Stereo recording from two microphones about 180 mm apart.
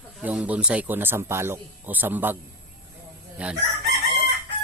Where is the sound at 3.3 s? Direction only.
5° right (ahead or behind).